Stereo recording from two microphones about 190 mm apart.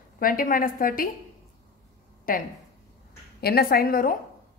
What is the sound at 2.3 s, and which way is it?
A woman's voice, 50° left (ahead or behind).